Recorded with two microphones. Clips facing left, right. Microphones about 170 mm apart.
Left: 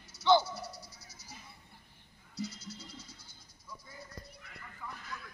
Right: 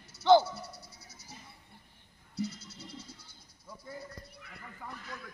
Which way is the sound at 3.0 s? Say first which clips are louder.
Right 3 dB; 65° right (ahead or behind).